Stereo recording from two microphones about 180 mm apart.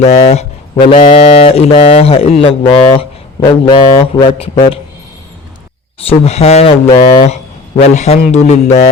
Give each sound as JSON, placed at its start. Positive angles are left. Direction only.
{"t": 0.0, "sound": "speech", "side_deg": 35}
{"t": 6.0, "sound": "speech", "side_deg": 35}